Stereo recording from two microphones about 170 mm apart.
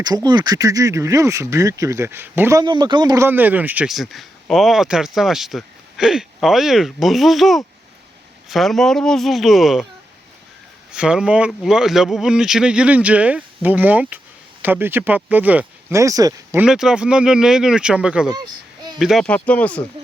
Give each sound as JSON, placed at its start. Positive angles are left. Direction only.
{"t": 0.0, "sound": "speech", "side_deg": -25}
{"t": 2.6, "sound": "speech", "side_deg": -25}
{"t": 3.2, "sound": "speech", "side_deg": -10}
{"t": 10.9, "sound": "speech", "side_deg": -5}
{"t": 16.6, "sound": "speech", "side_deg": -5}
{"t": 18.3, "sound": "a sound", "side_deg": -25}
{"t": 18.9, "sound": "speech", "side_deg": 0}